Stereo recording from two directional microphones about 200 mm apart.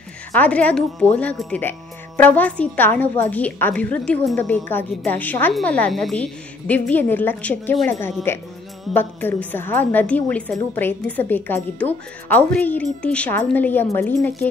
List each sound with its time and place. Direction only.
0.3 s speech: 5° left (ahead or behind)